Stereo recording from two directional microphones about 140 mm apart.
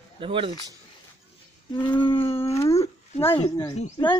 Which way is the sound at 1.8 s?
35° left (ahead or behind).